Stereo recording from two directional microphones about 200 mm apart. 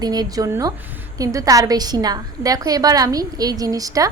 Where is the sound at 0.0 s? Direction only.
20° right (ahead or behind).